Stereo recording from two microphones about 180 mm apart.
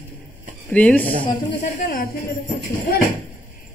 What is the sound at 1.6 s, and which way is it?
Speech, 50° left (ahead or behind).